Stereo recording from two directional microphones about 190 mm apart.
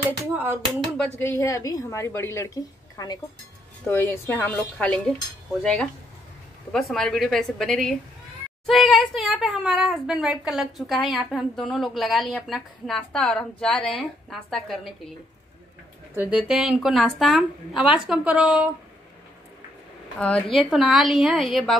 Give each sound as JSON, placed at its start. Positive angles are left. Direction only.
{"t": 0.3, "sound": "a sound", "side_deg": -10}
{"t": 1.4, "sound": "speech", "side_deg": 15}
{"t": 16.2, "sound": "speech", "side_deg": -5}
{"t": 20.2, "sound": "speech", "side_deg": 5}